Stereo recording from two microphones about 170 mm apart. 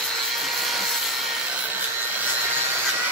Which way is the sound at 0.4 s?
Centre (ahead or behind).